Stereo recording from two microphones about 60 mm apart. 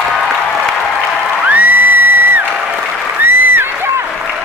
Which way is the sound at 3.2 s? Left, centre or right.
Right.